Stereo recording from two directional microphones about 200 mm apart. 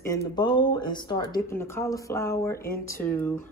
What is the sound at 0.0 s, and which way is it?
Speech, 20° left (ahead or behind).